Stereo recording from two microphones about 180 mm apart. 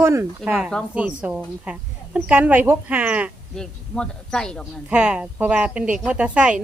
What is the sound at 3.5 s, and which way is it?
A man's voice, 5° left (ahead or behind).